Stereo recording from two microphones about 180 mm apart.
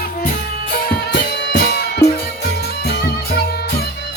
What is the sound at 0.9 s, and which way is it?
Music, 65° left (ahead or behind).